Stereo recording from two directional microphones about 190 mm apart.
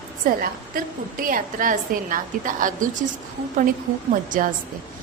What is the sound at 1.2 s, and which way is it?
A woman's voice, 45° right (ahead or behind).